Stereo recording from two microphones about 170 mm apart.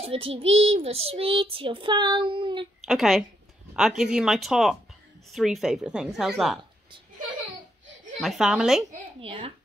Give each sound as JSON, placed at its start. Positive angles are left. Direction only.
{"t": 0.0, "sound": "a child's voice", "side_deg": -35}
{"t": 2.8, "sound": "a woman's voice", "side_deg": 0}
{"t": 8.2, "sound": "a woman's voice", "side_deg": 0}
{"t": 9.2, "sound": "a child's voice", "side_deg": -35}